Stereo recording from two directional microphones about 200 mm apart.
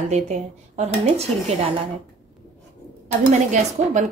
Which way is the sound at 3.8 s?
35° right (ahead or behind).